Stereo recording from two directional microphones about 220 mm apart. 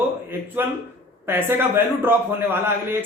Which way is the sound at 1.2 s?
10° right (ahead or behind).